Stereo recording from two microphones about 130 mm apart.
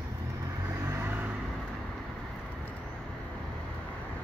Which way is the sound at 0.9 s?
20° right (ahead or behind).